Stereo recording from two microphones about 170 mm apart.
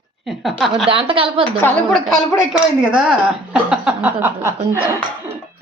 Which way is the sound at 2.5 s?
5° right (ahead or behind).